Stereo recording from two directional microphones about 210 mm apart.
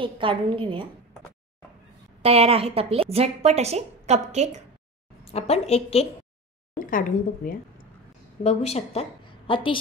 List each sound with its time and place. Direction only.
0.0 s a woman's voice: 25° right (ahead or behind)
2.2 s a woman's voice: 30° right (ahead or behind)
5.2 s a woman's voice: 30° left (ahead or behind)
6.8 s a woman's voice: 40° left (ahead or behind)
8.5 s a woman's voice: 30° left (ahead or behind)